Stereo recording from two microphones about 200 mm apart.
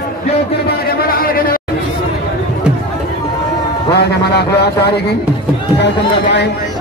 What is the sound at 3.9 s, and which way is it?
Speech, 55° left (ahead or behind).